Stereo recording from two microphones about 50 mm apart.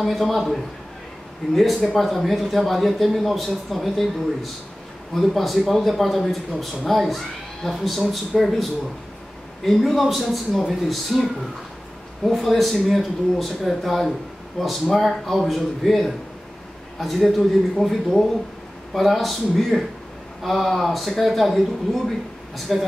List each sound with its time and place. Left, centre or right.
0.0 s speech: centre
9.7 s speech: centre
12.3 s speech: centre